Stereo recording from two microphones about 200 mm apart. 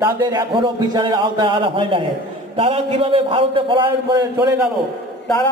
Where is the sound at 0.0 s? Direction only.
25° right (ahead or behind).